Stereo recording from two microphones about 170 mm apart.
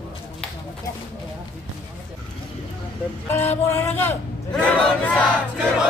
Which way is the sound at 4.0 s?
10° left (ahead or behind).